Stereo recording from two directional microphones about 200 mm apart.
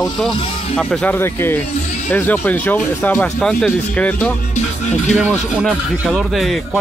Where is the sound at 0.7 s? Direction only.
5° left (ahead or behind).